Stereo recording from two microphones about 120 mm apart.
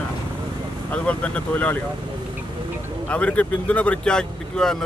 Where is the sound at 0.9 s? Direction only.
10° left (ahead or behind).